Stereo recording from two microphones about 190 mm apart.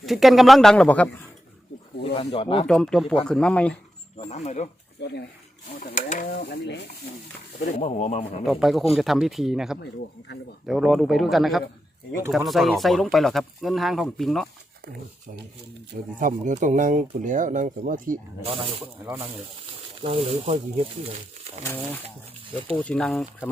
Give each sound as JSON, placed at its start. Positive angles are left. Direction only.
{"t": 0.0, "sound": "speech", "side_deg": 0}
{"t": 2.1, "sound": "speech", "side_deg": 30}
{"t": 2.6, "sound": "speech", "side_deg": 5}
{"t": 4.3, "sound": "speech", "side_deg": 35}
{"t": 5.8, "sound": "speech", "side_deg": 45}
{"t": 7.8, "sound": "speech", "side_deg": 35}
{"t": 8.4, "sound": "speech", "side_deg": 0}
{"t": 16.1, "sound": "speech", "side_deg": -45}
{"t": 18.4, "sound": "speech", "side_deg": -30}
{"t": 20.0, "sound": "speech", "side_deg": -30}
{"t": 22.8, "sound": "speech", "side_deg": 5}